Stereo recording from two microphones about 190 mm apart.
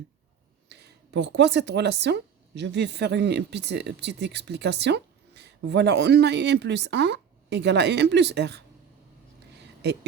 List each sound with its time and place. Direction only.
0.7 s speech: 65° right (ahead or behind)
9.8 s speech: 60° right (ahead or behind)